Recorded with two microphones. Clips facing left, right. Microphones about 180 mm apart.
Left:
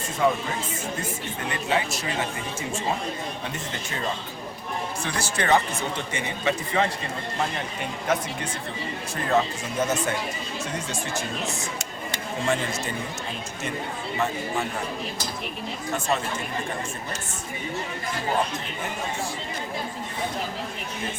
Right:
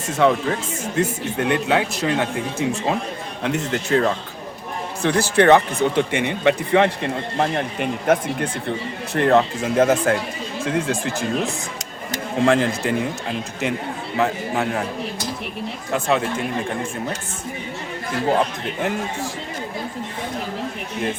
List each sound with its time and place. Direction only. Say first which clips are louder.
0.2 s speech: right 6 dB; 90° right
0.9 s speech: right 10 dB; 75° right (ahead or behind)
3.4 s speech: right 10 dB; 75° right (ahead or behind); by 8.4 s 55° right (ahead or behind)
9.1 s speech: right 8 dB; 65° right (ahead or behind)
10.7 s speech: right 11 dB; 90° right
14.2 s speech: right 6 dB; 70° right (ahead or behind)
15.9 s speech: right 6 dB; 85° right